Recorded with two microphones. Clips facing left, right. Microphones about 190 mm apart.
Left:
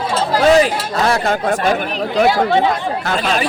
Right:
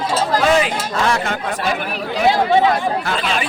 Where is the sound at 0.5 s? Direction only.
40° left (ahead or behind).